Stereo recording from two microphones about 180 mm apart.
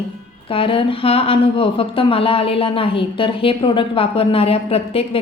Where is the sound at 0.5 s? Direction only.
30° left (ahead or behind).